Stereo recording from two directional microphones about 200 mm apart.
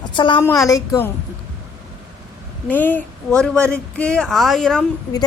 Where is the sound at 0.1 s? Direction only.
25° left (ahead or behind).